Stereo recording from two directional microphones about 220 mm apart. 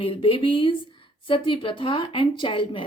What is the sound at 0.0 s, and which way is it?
A woman's voice, 25° left (ahead or behind).